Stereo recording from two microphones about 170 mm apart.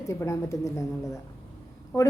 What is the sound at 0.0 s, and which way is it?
A woman's voice, 15° left (ahead or behind).